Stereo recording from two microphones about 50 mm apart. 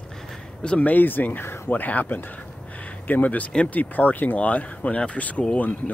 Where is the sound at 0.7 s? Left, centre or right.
Left.